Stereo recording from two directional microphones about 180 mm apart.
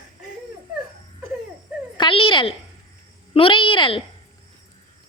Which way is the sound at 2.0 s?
30° left (ahead or behind).